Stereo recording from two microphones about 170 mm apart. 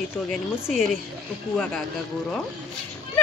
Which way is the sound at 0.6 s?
5° right (ahead or behind).